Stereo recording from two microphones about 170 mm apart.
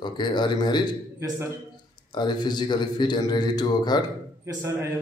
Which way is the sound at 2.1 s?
25° left (ahead or behind).